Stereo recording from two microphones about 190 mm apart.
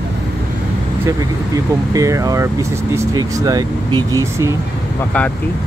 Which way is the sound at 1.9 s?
15° right (ahead or behind).